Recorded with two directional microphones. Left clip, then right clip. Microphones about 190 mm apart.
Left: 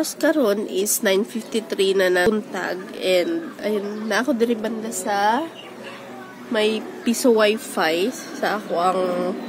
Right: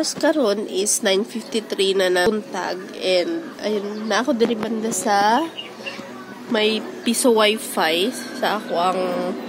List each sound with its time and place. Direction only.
0.0 s a woman's voice: 15° left (ahead or behind)
3.7 s a woman's voice: centre (ahead or behind)
4.6 s a woman's voice: 35° right (ahead or behind)
6.5 s a woman's voice: 15° right (ahead or behind)
7.1 s a woman's voice: 5° left (ahead or behind)